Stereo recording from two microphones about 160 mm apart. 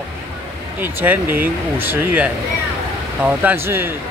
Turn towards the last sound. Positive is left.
turn(degrees=-15)  # may be behind; listen again after turning